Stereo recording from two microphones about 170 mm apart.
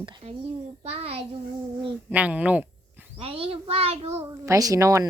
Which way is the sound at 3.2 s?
35° right (ahead or behind).